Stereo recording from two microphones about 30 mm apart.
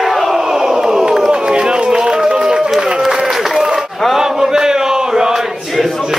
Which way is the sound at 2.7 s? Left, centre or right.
Centre.